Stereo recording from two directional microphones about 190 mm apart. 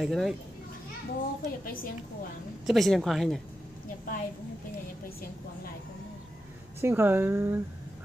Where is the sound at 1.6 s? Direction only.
50° left (ahead or behind).